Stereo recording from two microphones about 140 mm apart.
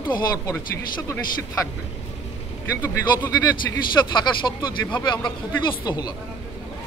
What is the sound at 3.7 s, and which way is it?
Speech, 20° left (ahead or behind).